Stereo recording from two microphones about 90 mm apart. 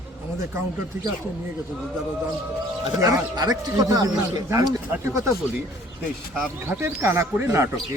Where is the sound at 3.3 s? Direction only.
45° right (ahead or behind).